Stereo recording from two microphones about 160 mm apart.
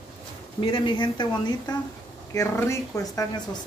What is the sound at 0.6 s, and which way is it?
Speech, 30° left (ahead or behind).